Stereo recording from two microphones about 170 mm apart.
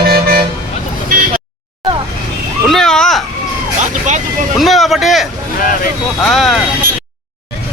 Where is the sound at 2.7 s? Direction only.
5° left (ahead or behind).